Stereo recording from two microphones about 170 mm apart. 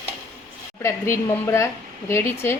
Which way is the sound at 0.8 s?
15° left (ahead or behind).